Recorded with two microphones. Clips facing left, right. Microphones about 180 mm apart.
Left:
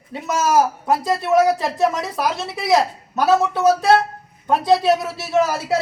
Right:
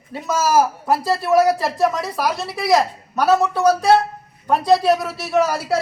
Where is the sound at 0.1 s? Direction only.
Centre (ahead or behind).